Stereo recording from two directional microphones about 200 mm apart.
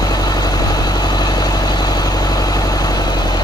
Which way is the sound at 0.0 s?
20° left (ahead or behind).